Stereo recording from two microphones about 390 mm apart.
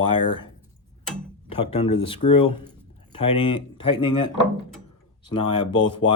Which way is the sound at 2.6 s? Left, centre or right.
Centre.